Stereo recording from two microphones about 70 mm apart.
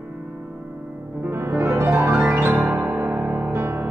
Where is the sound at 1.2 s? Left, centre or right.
Right.